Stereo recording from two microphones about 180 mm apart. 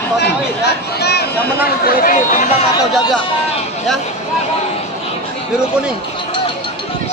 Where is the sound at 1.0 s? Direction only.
65° left (ahead or behind).